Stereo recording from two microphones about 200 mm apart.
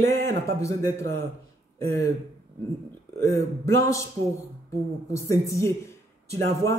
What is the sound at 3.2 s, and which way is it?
Speech, 15° left (ahead or behind).